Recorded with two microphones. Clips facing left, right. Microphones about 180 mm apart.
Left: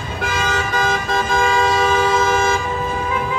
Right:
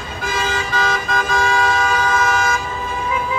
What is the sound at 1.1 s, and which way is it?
Vehicle, 20° left (ahead or behind).